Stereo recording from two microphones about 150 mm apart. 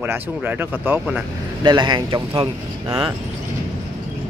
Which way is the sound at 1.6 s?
30° right (ahead or behind).